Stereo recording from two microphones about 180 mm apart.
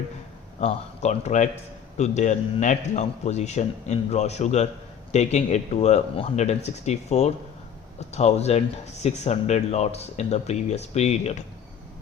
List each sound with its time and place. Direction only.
0.6 s a man's voice: 35° left (ahead or behind)